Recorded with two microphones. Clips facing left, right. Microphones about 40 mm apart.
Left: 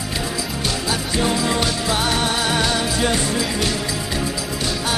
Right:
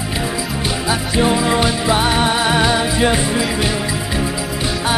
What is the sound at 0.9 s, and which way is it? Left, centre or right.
Music, right.